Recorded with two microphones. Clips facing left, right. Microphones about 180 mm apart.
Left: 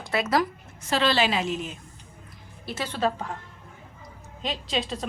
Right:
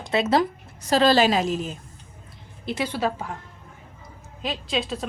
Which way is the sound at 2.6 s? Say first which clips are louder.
Right 2 dB; 15° right (ahead or behind).